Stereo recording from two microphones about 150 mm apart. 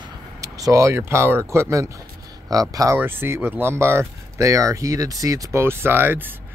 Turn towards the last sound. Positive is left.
turn(degrees=-15)  # may be behind; listen again after turning